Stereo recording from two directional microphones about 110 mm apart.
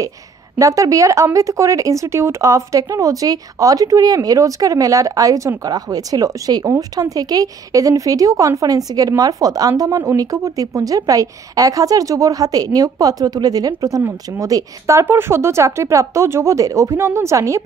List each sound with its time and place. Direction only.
0.6 s speech: 30° right (ahead or behind)